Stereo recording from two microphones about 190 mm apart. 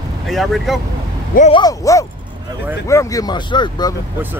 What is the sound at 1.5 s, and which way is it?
Speech, 20° left (ahead or behind).